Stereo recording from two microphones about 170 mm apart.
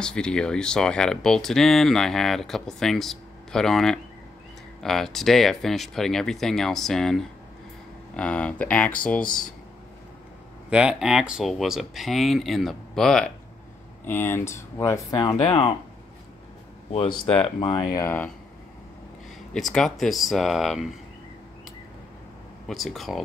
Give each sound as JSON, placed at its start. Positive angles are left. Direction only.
{"t": 0.0, "sound": "speech", "side_deg": 5}
{"t": 10.7, "sound": "speech", "side_deg": -5}
{"t": 16.9, "sound": "speech", "side_deg": 35}
{"t": 19.5, "sound": "speech", "side_deg": 0}
{"t": 22.7, "sound": "speech", "side_deg": 0}